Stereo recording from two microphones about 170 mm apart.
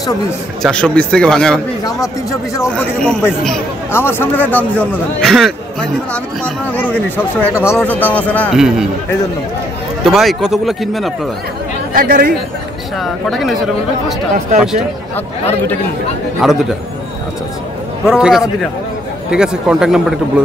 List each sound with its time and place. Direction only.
0.6 s speech: 5° left (ahead or behind)
2.7 s a man's voice: 5° left (ahead or behind)
8.5 s speech: 5° right (ahead or behind)
10.0 s speech: centre (ahead or behind)
11.9 s speech: 55° right (ahead or behind)
13.0 s speech: centre (ahead or behind)
14.6 s speech: 5° right (ahead or behind)
16.4 s speech: centre (ahead or behind)
18.0 s speech: 5° right (ahead or behind)